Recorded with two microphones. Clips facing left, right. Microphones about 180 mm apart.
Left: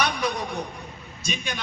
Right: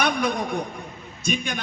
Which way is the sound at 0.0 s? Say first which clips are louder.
Right 3 dB; 55° right (ahead or behind).